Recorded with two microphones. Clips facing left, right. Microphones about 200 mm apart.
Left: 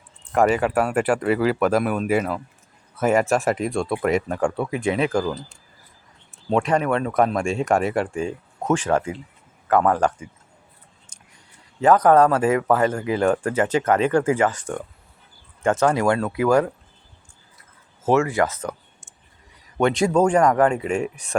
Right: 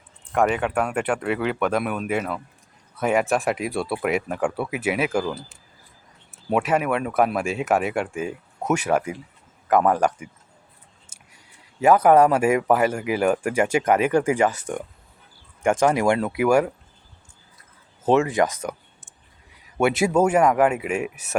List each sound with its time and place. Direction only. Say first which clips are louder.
0.3 s speech: left 3 dB; centre (ahead or behind)
11.1 s a sound: left 1 dB; 10° right (ahead or behind)
11.8 s speech: even; 10° right (ahead or behind)
18.0 s speech: even; 15° right (ahead or behind)
19.8 s speech: left 1 dB; 5° right (ahead or behind)